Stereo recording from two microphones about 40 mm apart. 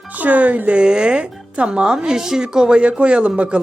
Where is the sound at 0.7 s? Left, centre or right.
Right.